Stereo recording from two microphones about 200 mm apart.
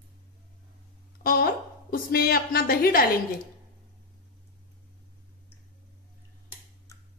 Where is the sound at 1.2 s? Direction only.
50° left (ahead or behind).